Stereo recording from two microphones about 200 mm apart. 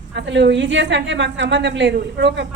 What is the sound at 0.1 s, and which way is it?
A woman's voice, 60° right (ahead or behind).